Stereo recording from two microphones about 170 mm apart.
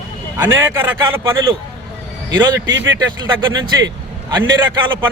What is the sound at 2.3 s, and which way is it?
Speech, 90° right.